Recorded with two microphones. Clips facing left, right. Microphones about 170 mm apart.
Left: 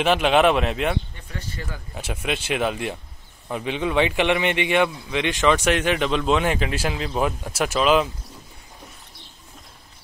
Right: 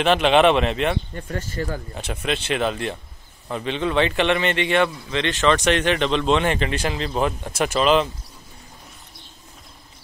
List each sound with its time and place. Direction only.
0.0 s speech: 5° left (ahead or behind)
1.1 s speech: 45° right (ahead or behind)
2.0 s a man's voice: 10° left (ahead or behind)